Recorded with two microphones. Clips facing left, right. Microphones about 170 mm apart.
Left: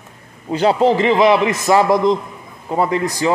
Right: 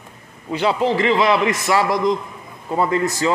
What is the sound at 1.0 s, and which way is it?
A man's voice, 20° left (ahead or behind).